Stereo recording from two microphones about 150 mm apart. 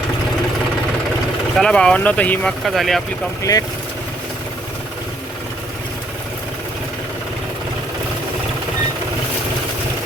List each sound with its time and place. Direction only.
1.5 s speech: 5° left (ahead or behind)
3.5 s speech: 25° left (ahead or behind)